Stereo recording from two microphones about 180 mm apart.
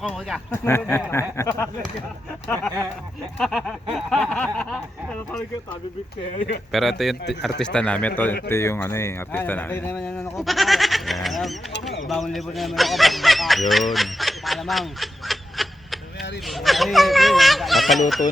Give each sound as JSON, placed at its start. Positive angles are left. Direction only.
{"t": 0.5, "sound": "speech", "side_deg": 15}
{"t": 3.3, "sound": "speech", "side_deg": 0}
{"t": 6.7, "sound": "speech", "side_deg": 0}
{"t": 10.3, "sound": "speech", "side_deg": 0}